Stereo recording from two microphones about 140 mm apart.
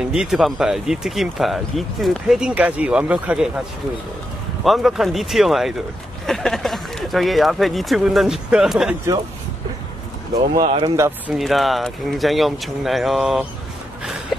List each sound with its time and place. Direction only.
0.1 s speech: 5° right (ahead or behind)
4.6 s speech: centre (ahead or behind)
10.5 s speech: 30° right (ahead or behind)
11.0 s speech: 15° right (ahead or behind)
11.3 s speech: centre (ahead or behind)